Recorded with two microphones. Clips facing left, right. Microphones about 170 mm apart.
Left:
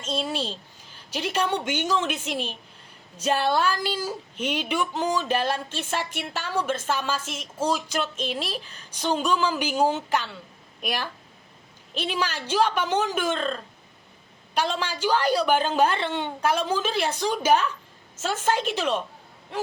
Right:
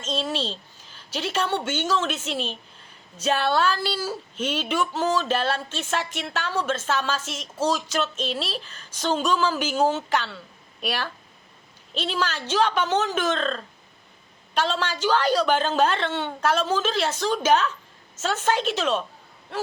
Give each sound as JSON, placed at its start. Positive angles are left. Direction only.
{"t": 0.0, "sound": "speech", "side_deg": 10}